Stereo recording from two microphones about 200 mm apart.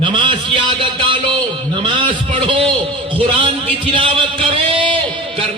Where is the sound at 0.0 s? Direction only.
25° right (ahead or behind).